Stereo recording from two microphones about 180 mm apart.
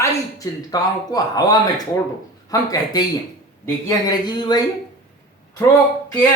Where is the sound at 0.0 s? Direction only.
20° left (ahead or behind).